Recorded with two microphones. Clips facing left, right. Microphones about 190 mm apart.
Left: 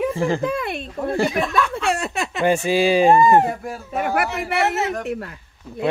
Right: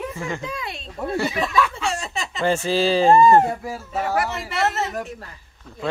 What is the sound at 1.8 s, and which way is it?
Speech, 60° left (ahead or behind).